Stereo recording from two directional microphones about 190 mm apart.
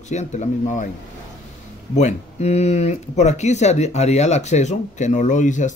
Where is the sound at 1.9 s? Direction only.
35° left (ahead or behind).